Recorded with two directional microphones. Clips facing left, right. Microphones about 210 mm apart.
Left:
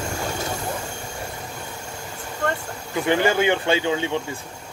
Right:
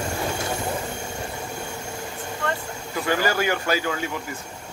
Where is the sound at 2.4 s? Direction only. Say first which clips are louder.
Left 3 dB; 45° left (ahead or behind).